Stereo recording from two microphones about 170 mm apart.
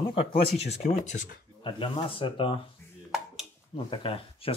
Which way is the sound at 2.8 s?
15° left (ahead or behind).